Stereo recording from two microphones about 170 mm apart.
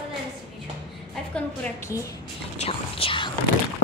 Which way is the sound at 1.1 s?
5° left (ahead or behind).